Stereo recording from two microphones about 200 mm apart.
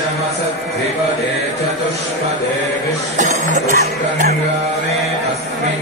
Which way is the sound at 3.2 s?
40° right (ahead or behind).